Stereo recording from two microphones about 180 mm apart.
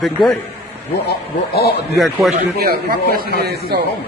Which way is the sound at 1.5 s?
60° left (ahead or behind).